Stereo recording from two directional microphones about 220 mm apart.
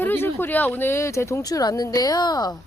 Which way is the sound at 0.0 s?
10° left (ahead or behind).